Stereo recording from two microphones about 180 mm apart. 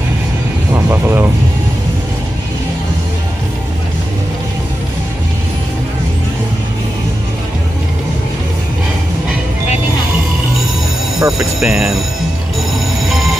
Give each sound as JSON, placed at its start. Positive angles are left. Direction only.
{"t": 0.7, "sound": "speech", "side_deg": -15}
{"t": 11.3, "sound": "speech", "side_deg": -5}